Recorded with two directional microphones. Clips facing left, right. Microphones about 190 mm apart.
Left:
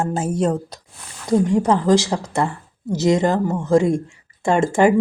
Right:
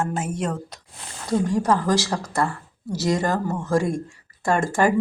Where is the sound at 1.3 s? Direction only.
20° left (ahead or behind).